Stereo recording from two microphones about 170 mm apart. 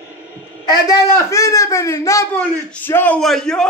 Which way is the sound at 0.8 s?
20° left (ahead or behind).